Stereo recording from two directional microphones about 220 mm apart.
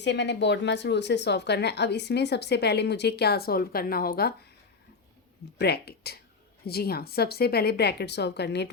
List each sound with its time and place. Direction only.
0.0 s speech: 50° left (ahead or behind)
5.5 s speech: 45° left (ahead or behind)